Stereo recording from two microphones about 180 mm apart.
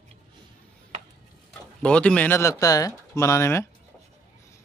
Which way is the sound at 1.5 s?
5° left (ahead or behind).